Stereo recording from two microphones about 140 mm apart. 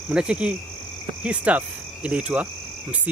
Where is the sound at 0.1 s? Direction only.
5° right (ahead or behind).